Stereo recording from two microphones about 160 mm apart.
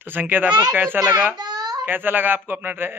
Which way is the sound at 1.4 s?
25° right (ahead or behind).